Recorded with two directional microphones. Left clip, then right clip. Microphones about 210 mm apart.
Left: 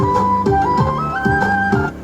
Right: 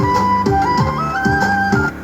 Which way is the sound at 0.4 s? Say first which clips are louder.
Even; 10° right (ahead or behind).